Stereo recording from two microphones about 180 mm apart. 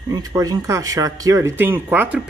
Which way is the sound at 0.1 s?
20° right (ahead or behind).